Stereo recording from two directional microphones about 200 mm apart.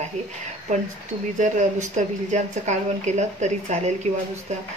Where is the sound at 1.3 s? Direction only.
40° right (ahead or behind).